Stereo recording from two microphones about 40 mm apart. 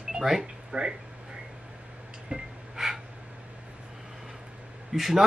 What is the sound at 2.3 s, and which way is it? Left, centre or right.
Gasp, centre.